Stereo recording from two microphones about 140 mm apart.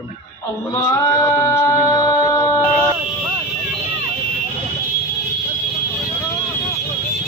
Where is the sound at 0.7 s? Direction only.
20° left (ahead or behind).